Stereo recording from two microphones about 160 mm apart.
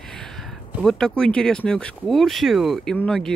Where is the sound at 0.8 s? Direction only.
5° left (ahead or behind).